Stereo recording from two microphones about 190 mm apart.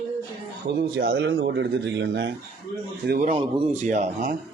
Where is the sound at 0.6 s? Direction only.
85° right; by 2.3 s 70° right (ahead or behind).